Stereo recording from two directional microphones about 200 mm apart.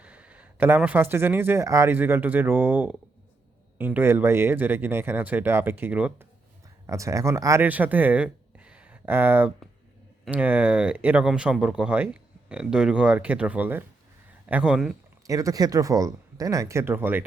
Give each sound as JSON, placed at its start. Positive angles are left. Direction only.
{"t": 0.0, "sound": "speech", "side_deg": -5}
{"t": 15.3, "sound": "speech", "side_deg": -15}